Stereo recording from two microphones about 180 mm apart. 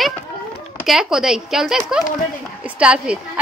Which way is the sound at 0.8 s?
5° right (ahead or behind).